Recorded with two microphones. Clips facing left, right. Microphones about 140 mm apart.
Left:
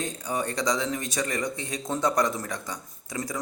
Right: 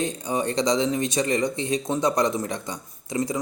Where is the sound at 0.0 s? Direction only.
20° right (ahead or behind).